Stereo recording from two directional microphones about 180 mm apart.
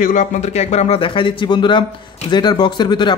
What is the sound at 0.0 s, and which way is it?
Speech, 45° left (ahead or behind).